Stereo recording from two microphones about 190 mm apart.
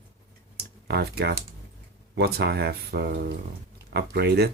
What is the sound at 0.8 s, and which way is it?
Speech, 60° right (ahead or behind).